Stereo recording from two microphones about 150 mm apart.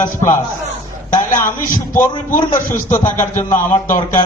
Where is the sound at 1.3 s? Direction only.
60° left (ahead or behind).